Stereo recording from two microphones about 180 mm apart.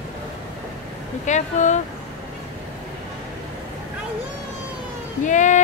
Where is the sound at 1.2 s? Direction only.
40° left (ahead or behind).